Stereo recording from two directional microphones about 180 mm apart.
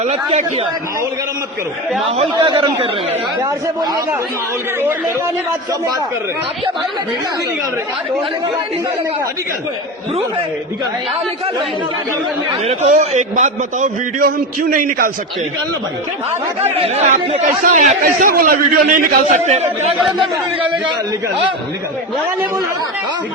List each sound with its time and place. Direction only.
0.0 s a man's voice: 35° right (ahead or behind)
2.3 s speech: 25° right (ahead or behind)
12.6 s a man's voice: 40° right (ahead or behind)
16.8 s a man's voice: 35° right (ahead or behind)